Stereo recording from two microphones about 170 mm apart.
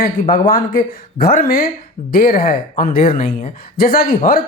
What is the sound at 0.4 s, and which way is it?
Speech, 60° left (ahead or behind).